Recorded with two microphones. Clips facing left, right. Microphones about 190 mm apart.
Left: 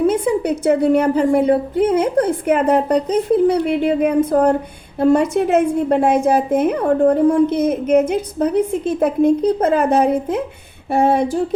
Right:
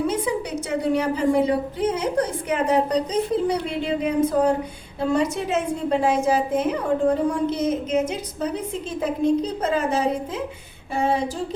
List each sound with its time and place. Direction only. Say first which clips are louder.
0.1 s a woman's voice: left 7 dB; 55° left (ahead or behind)